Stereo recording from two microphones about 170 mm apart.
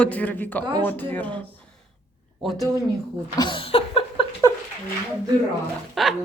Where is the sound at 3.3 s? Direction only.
30° left (ahead or behind).